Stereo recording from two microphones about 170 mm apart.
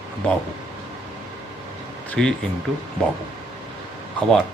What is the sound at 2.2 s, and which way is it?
Speech, 5° left (ahead or behind).